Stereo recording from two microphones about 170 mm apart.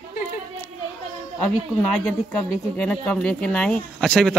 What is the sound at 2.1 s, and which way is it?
Speech, 5° left (ahead or behind).